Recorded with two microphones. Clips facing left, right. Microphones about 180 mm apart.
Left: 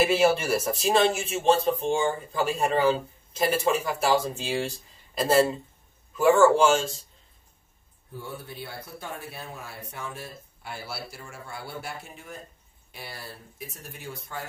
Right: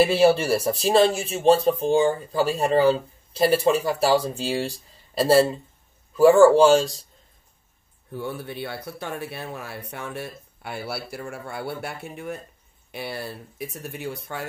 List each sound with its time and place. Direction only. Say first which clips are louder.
0.0 s speech: right 4 dB; 30° right (ahead or behind)
8.1 s speech: right 7 dB; 70° right (ahead or behind)